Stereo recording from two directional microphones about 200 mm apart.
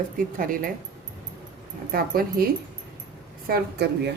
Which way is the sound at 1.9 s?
50° right (ahead or behind).